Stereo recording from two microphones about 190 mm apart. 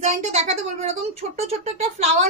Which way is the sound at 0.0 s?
35° right (ahead or behind).